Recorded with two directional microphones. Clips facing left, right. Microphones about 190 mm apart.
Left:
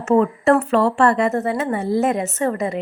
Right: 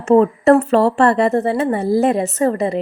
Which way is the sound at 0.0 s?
35° right (ahead or behind).